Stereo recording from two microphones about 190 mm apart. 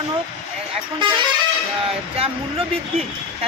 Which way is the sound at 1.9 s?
30° right (ahead or behind).